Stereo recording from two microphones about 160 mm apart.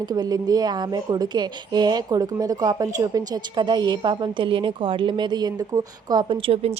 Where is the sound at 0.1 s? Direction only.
25° right (ahead or behind).